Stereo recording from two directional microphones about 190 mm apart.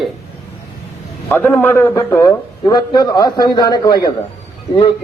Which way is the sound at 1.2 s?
10° left (ahead or behind).